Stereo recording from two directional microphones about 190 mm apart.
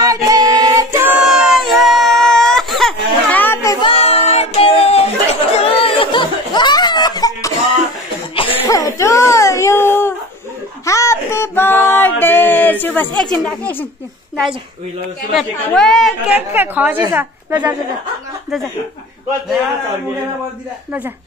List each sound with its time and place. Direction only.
0.0 s child singing: 20° right (ahead or behind); by 3.7 s 10° left (ahead or behind)
3.8 s a sound: 30° left (ahead or behind)
8.4 s baby cry: 30° left (ahead or behind); by 10.1 s 10° left (ahead or behind)
10.9 s music: 15° left (ahead or behind)
13.2 s speech: 5° left (ahead or behind)
15.3 s a woman's voice: 5° left (ahead or behind)